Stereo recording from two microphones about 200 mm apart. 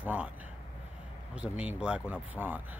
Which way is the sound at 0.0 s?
10° right (ahead or behind).